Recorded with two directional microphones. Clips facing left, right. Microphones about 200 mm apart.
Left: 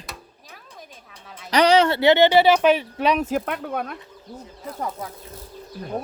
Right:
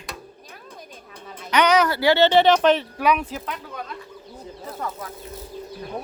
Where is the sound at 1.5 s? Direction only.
35° left (ahead or behind); by 2.8 s 10° left (ahead or behind).